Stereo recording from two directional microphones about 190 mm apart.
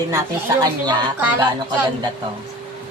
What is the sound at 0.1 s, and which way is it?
Speech, 20° right (ahead or behind).